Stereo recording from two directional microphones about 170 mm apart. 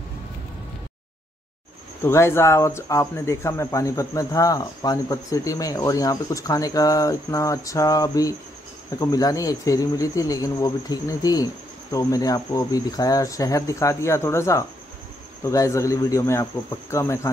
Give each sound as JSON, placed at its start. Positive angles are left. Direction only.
{"t": 2.0, "sound": "speech", "side_deg": 15}